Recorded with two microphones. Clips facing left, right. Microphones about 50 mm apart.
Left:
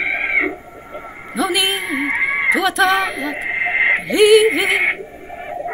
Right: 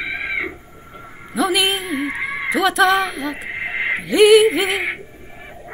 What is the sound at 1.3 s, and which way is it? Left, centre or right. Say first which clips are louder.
Music: even; centre.